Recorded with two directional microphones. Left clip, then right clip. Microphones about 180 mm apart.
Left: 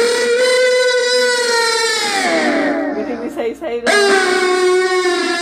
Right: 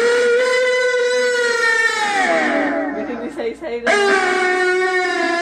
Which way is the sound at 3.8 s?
40° left (ahead or behind).